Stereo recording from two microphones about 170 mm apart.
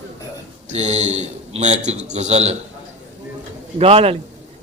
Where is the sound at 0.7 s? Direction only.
40° right (ahead or behind).